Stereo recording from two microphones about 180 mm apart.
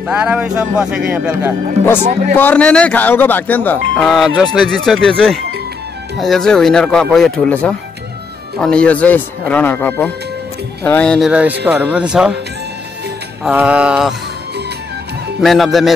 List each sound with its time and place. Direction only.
0.0 s speech: 10° right (ahead or behind)
2.0 s speech: 40° right (ahead or behind)
2.3 s speech: 10° left (ahead or behind)
13.4 s speech: 5° right (ahead or behind)
15.4 s speech: centre (ahead or behind)